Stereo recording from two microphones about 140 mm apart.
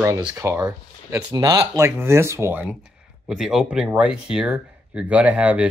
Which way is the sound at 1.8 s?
20° right (ahead or behind).